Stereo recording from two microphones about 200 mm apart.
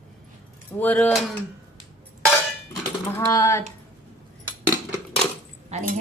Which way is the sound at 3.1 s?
15° left (ahead or behind).